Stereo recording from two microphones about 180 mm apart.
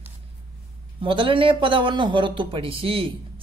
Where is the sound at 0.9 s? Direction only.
30° right (ahead or behind).